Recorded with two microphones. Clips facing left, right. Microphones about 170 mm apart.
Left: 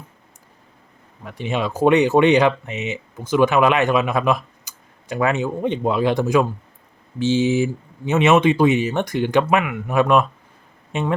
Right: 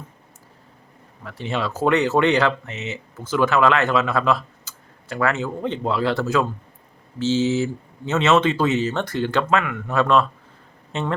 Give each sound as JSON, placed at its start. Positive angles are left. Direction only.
{"t": 1.2, "sound": "speech", "side_deg": 15}